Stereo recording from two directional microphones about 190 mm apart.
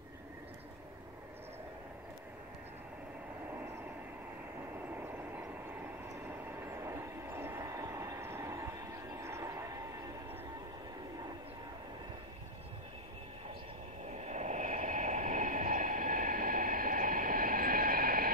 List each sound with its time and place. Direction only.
4.8 s train: 10° right (ahead or behind)
6.2 s vehicle: 15° right (ahead or behind)
14.1 s vehicle: 35° right (ahead or behind)